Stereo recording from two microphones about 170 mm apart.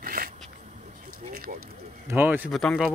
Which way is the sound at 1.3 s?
60° right (ahead or behind).